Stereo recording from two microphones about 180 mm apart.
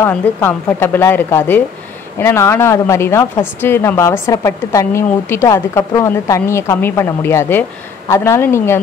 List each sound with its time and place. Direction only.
0.0 s a woman's voice: 10° left (ahead or behind)